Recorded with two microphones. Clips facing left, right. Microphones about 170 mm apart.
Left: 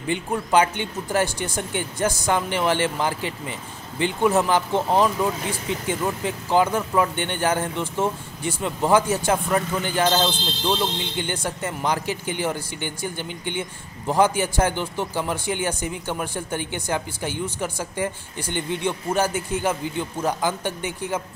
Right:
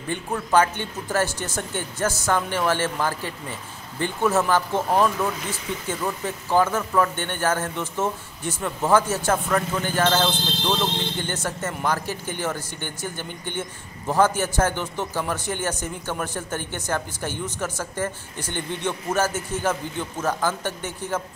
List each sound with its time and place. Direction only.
0.1 s speech: 15° left (ahead or behind)